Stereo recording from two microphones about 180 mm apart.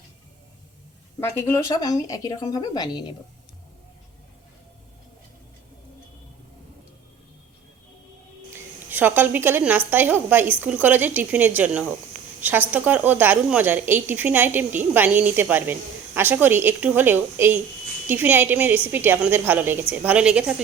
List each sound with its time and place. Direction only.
1.2 s speech: 15° left (ahead or behind)
8.9 s a woman's voice: 10° right (ahead or behind)